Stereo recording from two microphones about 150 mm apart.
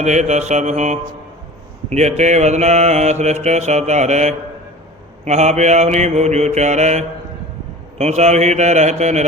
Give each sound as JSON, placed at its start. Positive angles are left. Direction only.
{"t": 0.0, "sound": "mantra", "side_deg": -50}